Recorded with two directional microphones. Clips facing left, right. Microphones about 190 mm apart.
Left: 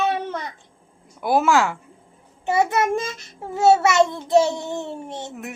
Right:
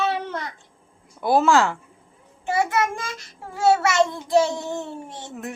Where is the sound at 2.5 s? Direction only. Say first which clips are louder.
Left 3 dB; 20° left (ahead or behind).